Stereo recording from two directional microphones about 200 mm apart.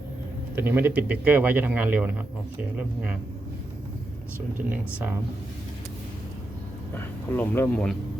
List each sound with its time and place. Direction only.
0.5 s a man's voice: 10° right (ahead or behind)
4.7 s a man's voice: 10° right (ahead or behind)
6.9 s speech: 10° left (ahead or behind)